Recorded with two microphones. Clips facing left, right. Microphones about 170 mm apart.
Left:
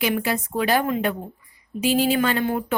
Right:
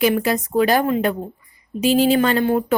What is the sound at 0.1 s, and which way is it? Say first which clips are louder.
A woman's voice: right 5 dB; 40° right (ahead or behind).